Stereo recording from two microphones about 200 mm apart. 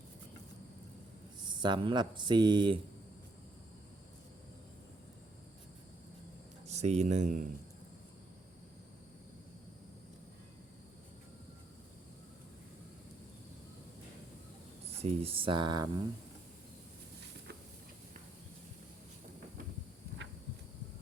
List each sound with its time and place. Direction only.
1.6 s speech: 25° right (ahead or behind)
6.7 s speech: 35° right (ahead or behind)
14.8 s speech: 30° right (ahead or behind)